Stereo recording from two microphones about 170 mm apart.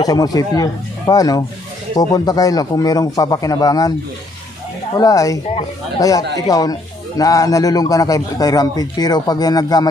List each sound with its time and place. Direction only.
0.0 s a man's voice: 20° left (ahead or behind)
4.9 s a man's voice: 20° left (ahead or behind)